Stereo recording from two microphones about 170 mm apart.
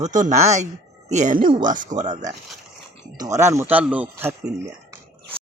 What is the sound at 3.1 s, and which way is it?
Speech, 20° right (ahead or behind).